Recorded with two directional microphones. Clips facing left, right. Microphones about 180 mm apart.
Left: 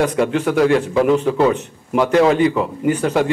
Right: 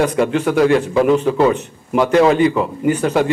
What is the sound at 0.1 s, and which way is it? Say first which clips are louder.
A man's voice: right 1 dB; 15° right (ahead or behind).